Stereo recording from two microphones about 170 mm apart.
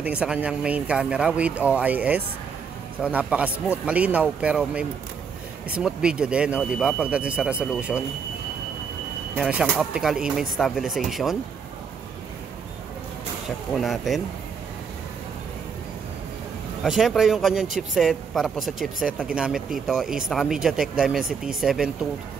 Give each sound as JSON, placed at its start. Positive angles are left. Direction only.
{"t": 0.0, "sound": "speech", "side_deg": -5}
{"t": 9.3, "sound": "speech", "side_deg": -5}
{"t": 13.7, "sound": "speech", "side_deg": 0}
{"t": 16.8, "sound": "speech", "side_deg": 0}